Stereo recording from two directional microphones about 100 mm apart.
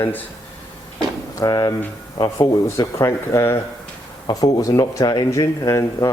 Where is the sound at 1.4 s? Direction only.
40° left (ahead or behind).